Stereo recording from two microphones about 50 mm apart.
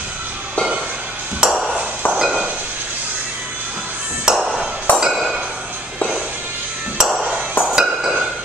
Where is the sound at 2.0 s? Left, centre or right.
Left.